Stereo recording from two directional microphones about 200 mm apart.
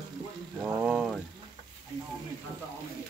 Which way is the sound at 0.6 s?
5° right (ahead or behind).